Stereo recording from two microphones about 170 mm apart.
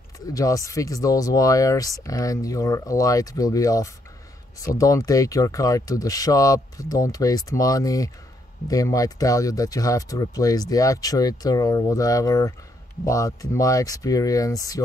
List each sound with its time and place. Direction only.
0.3 s speech: 20° left (ahead or behind)